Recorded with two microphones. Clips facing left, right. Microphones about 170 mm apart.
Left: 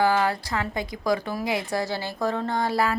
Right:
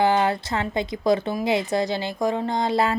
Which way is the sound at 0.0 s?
20° right (ahead or behind).